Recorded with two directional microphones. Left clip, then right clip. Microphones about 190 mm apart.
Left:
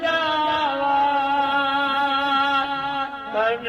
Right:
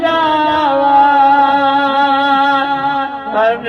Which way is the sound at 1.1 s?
35° left (ahead or behind).